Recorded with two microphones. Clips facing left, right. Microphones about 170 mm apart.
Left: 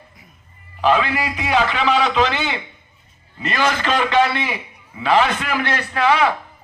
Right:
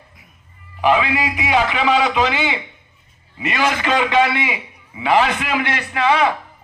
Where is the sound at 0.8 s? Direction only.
15° right (ahead or behind).